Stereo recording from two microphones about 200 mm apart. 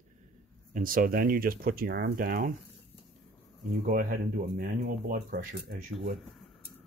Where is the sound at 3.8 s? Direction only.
40° right (ahead or behind).